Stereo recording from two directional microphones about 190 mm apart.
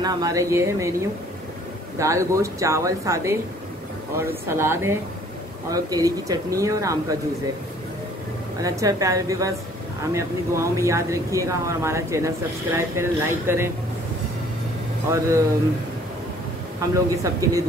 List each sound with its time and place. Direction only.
0.0 s speech: 20° right (ahead or behind)
2.0 s speech: 15° right (ahead or behind)
8.6 s speech: 15° right (ahead or behind)
15.0 s speech: 15° right (ahead or behind)
16.8 s speech: 15° right (ahead or behind)